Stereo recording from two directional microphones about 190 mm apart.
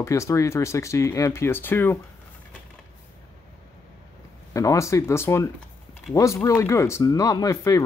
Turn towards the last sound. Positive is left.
turn(degrees=15)  # may be behind; listen again after turning